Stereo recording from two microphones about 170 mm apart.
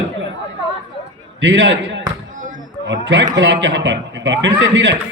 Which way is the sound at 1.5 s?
90° right.